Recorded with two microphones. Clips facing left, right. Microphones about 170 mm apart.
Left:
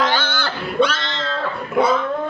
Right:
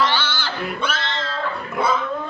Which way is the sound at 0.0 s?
50° left (ahead or behind).